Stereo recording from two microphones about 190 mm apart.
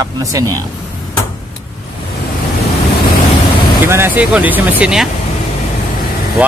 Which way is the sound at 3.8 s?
10° right (ahead or behind).